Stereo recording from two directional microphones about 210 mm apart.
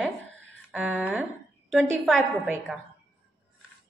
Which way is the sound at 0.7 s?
5° right (ahead or behind).